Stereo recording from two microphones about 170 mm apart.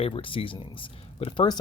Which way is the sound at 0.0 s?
30° left (ahead or behind).